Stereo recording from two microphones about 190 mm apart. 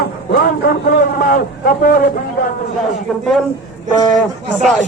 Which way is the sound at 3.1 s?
Centre (ahead or behind).